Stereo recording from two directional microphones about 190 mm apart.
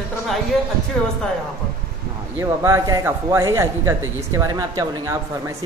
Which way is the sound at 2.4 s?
15° right (ahead or behind).